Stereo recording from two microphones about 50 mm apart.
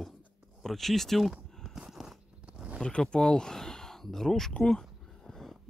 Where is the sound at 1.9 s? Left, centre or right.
Centre.